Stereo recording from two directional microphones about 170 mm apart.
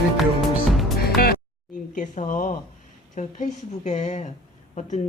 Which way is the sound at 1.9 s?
45° left (ahead or behind).